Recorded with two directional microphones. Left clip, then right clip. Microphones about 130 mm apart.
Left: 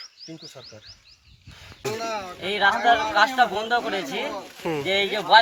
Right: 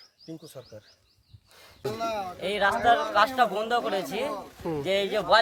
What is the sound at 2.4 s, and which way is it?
A man's voice, 40° right (ahead or behind).